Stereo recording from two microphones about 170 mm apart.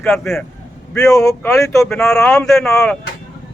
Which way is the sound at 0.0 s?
5° left (ahead or behind).